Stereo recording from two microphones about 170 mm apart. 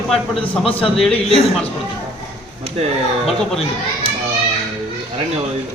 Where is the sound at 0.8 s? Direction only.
5° left (ahead or behind).